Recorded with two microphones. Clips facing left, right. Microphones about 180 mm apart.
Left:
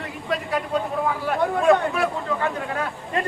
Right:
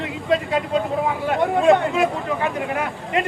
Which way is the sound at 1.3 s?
20° right (ahead or behind).